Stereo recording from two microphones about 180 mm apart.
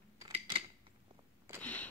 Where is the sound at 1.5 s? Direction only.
10° left (ahead or behind).